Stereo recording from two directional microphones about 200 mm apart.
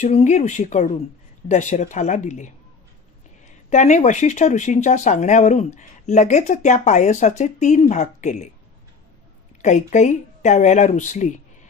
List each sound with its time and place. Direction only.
0.0 s speech: 35° left (ahead or behind)
3.7 s speech: 35° left (ahead or behind)
9.6 s speech: 35° left (ahead or behind)